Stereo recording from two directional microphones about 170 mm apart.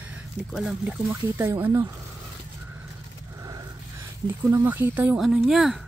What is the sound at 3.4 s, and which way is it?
Scrape, 20° right (ahead or behind).